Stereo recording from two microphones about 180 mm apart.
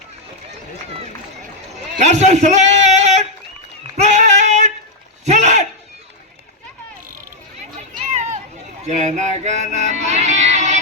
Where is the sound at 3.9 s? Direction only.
40° right (ahead or behind).